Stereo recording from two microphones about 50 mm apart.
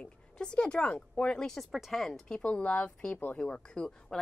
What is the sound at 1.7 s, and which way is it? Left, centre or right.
Speech, centre.